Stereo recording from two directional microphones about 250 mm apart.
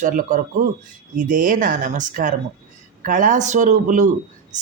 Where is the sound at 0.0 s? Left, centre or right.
Right.